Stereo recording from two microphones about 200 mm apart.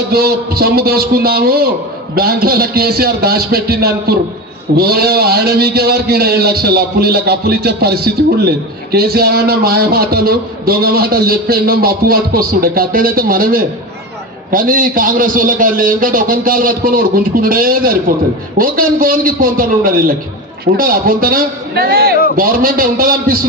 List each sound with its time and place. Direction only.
0.1 s a man's voice: 50° right (ahead or behind)